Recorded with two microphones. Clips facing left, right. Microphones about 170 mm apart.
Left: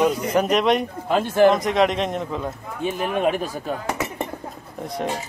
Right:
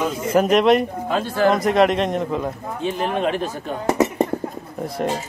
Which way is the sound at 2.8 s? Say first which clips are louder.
Even; 10° left (ahead or behind).